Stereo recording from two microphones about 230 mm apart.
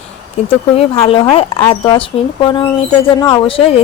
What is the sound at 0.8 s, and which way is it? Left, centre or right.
A woman's voice, left.